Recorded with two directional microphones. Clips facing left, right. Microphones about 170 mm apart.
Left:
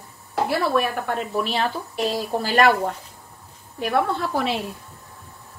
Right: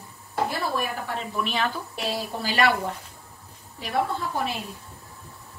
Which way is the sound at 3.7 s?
60° left (ahead or behind).